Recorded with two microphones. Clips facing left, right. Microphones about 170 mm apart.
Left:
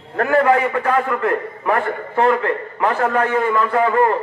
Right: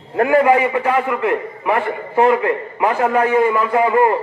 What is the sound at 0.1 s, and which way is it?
A man's voice, 10° right (ahead or behind).